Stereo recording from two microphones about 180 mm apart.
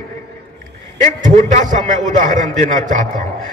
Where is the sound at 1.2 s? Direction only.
45° right (ahead or behind).